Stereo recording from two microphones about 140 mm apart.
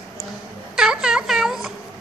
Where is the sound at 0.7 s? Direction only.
5° right (ahead or behind).